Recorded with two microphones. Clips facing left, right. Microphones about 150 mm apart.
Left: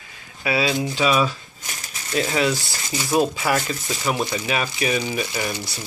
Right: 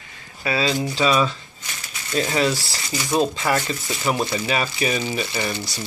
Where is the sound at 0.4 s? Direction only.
10° left (ahead or behind).